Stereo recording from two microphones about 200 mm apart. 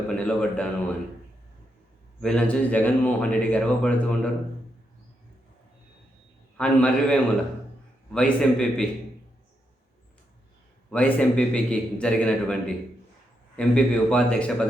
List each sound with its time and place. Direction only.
0.2 s a man's voice: 5° left (ahead or behind)
2.2 s speech: 5° left (ahead or behind)
6.6 s a man's voice: 5° left (ahead or behind)
10.9 s a man's voice: 5° left (ahead or behind)